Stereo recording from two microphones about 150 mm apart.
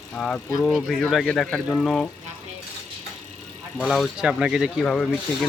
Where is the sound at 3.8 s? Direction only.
5° right (ahead or behind).